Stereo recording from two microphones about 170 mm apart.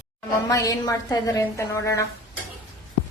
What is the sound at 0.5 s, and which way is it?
A woman's voice, 20° left (ahead or behind).